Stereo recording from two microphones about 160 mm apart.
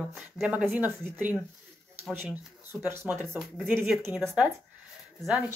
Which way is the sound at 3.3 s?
Centre (ahead or behind).